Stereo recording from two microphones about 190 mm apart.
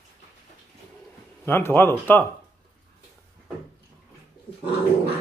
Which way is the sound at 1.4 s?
10° left (ahead or behind).